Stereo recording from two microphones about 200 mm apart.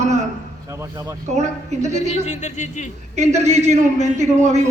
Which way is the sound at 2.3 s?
35° left (ahead or behind).